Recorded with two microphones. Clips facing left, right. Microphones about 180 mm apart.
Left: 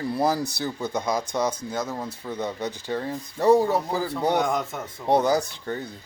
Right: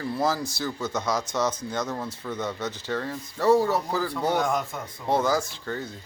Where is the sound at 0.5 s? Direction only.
15° left (ahead or behind).